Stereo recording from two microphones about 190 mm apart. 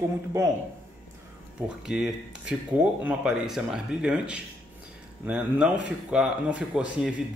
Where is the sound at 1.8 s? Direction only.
5° right (ahead or behind).